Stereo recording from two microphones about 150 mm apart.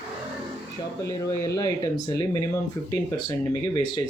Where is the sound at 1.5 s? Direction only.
25° left (ahead or behind).